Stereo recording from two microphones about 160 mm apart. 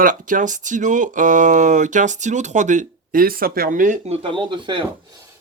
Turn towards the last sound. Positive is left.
turn(degrees=-30)  # may be behind; listen again after turning